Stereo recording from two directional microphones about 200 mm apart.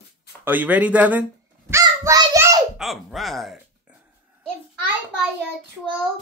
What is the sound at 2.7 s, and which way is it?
Speech, centre (ahead or behind).